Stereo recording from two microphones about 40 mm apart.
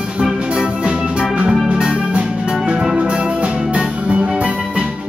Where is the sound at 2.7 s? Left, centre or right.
Centre.